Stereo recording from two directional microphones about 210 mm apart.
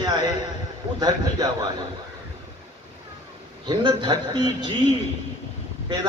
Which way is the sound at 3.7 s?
20° right (ahead or behind).